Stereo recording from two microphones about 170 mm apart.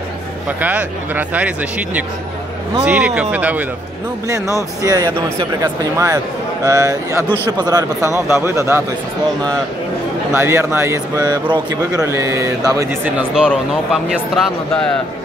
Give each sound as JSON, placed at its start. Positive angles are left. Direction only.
{"t": 0.5, "sound": "speech", "side_deg": -10}
{"t": 7.2, "sound": "speech", "side_deg": 15}
{"t": 7.5, "sound": "speech", "side_deg": -20}
{"t": 10.3, "sound": "speech", "side_deg": -15}